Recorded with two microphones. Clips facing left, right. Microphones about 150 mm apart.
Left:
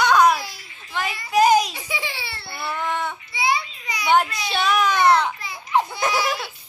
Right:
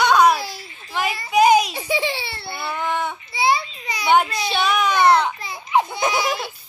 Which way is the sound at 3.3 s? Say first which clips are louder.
Right 4 dB; 35° right (ahead or behind).